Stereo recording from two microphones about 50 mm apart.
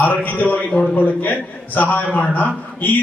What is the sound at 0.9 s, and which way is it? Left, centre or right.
A man's voice, left.